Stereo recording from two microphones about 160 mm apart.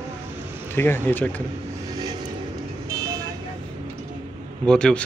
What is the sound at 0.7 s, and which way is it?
Speech, 15° left (ahead or behind).